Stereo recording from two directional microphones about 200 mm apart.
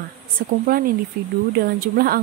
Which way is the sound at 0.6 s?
45° right (ahead or behind).